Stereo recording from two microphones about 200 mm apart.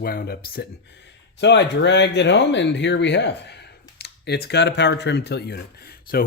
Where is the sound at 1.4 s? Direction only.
60° left (ahead or behind).